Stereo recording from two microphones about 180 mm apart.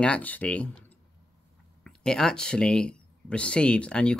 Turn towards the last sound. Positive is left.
turn(degrees=5)  # may be behind; listen again after turning